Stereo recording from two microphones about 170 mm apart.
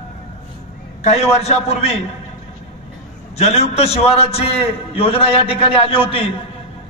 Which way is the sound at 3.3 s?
40° left (ahead or behind).